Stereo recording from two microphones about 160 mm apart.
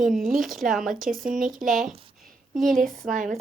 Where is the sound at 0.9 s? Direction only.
60° right (ahead or behind).